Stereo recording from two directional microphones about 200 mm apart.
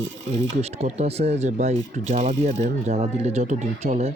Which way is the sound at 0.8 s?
30° right (ahead or behind).